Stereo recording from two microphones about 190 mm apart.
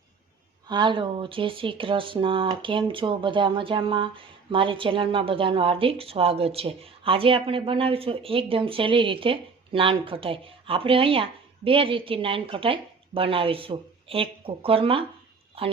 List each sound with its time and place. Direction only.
0.7 s speech: 25° right (ahead or behind)